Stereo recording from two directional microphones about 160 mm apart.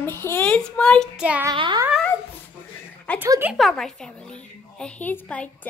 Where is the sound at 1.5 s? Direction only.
25° right (ahead or behind).